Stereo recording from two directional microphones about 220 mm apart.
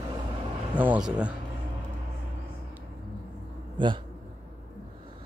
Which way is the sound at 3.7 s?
20° right (ahead or behind).